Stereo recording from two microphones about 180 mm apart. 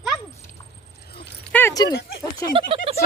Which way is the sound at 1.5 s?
15° left (ahead or behind).